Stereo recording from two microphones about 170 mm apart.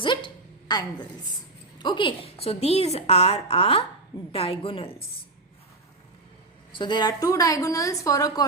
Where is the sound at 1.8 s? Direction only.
30° left (ahead or behind).